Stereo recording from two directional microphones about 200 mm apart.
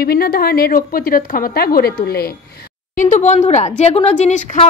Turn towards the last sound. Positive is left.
turn(degrees=35)  # may be behind; listen again after turning